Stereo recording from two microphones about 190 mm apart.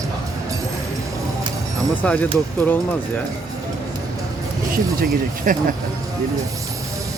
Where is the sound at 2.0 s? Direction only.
5° left (ahead or behind).